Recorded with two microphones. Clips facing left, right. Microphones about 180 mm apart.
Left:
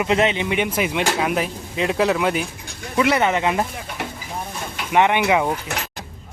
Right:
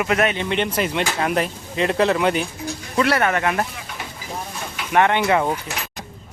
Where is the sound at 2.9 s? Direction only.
20° left (ahead or behind).